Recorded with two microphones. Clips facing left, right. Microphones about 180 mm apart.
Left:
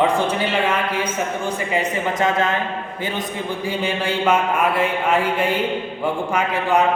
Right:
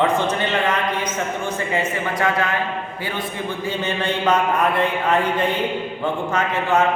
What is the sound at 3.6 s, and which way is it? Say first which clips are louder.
A man's voice: left 1 dB; 10° left (ahead or behind).